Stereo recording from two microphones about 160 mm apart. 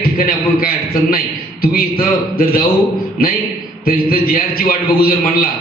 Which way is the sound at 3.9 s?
65° left (ahead or behind).